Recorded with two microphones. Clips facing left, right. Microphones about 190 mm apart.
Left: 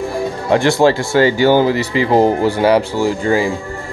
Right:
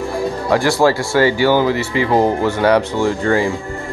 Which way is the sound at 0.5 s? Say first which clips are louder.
Left 2 dB; 20° left (ahead or behind).